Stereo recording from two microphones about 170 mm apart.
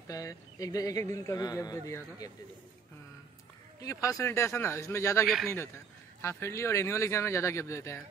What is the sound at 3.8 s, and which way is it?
A man's voice, 20° left (ahead or behind).